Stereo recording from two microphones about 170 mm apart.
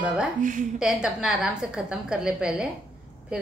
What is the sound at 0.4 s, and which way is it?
Speech, 50° right (ahead or behind).